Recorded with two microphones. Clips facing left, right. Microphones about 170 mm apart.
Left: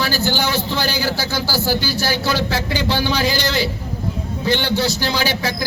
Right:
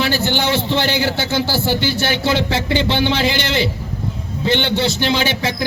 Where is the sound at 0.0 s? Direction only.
25° right (ahead or behind).